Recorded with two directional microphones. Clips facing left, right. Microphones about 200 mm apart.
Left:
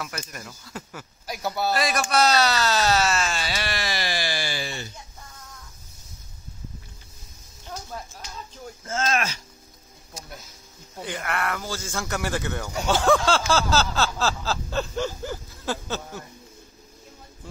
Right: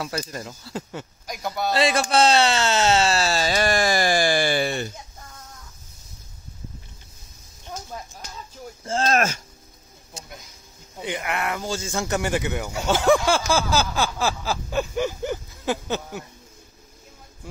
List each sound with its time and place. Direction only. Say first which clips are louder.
0.0 s speech: right 6 dB; 30° right (ahead or behind)
1.2 s speech: left 1 dB; 5° left (ahead or behind)
1.8 s speech: right 5 dB; 25° right (ahead or behind); by 4.9 s 55° right (ahead or behind)
8.8 s speech: right 4 dB; 35° right (ahead or behind)
11.0 s speech: right 2 dB; 20° right (ahead or behind)